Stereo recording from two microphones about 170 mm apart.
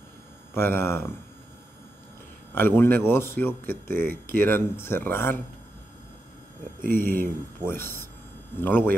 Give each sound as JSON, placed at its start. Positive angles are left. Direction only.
{"t": 0.6, "sound": "speech", "side_deg": 15}
{"t": 2.5, "sound": "speech", "side_deg": 15}
{"t": 6.8, "sound": "speech", "side_deg": -55}
{"t": 7.6, "sound": "speech", "side_deg": 15}